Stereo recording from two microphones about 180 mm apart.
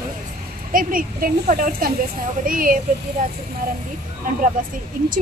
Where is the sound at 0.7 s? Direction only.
50° right (ahead or behind).